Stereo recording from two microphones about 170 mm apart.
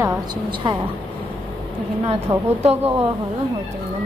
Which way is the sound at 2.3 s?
30° right (ahead or behind).